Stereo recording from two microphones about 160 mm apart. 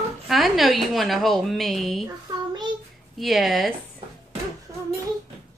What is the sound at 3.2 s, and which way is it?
Speech, centre (ahead or behind).